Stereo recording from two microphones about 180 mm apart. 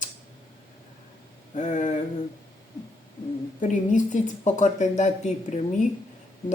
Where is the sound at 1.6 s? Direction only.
40° left (ahead or behind).